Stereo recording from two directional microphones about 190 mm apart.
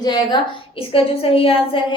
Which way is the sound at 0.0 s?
20° left (ahead or behind).